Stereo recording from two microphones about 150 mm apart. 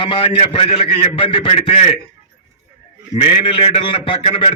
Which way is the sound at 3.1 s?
40° left (ahead or behind).